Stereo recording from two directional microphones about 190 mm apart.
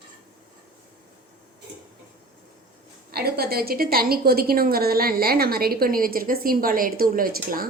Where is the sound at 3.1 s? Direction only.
55° right (ahead or behind).